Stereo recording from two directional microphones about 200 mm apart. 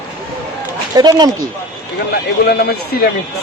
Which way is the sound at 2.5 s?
50° left (ahead or behind).